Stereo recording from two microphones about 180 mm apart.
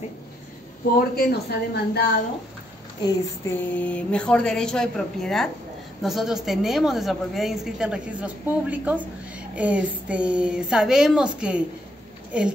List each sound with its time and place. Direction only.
0.9 s speech: 55° left (ahead or behind)
3.5 s a woman's voice: 10° left (ahead or behind)